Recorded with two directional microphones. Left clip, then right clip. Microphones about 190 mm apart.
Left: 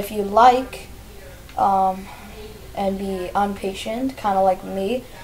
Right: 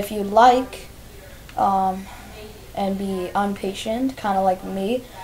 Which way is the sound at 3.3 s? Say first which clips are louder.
Left 2 dB; 45° right (ahead or behind).